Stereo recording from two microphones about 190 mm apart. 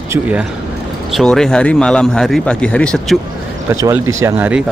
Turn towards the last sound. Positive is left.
turn(degrees=-10)  # may be behind; listen again after turning